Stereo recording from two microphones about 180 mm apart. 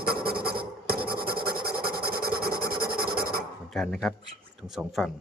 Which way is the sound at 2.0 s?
60° right (ahead or behind).